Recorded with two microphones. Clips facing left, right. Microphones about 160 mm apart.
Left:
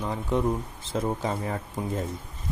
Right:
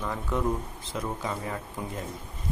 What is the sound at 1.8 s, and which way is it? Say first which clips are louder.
Speech: left 4 dB; 25° left (ahead or behind).